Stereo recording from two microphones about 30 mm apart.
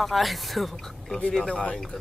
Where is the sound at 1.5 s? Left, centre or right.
Left.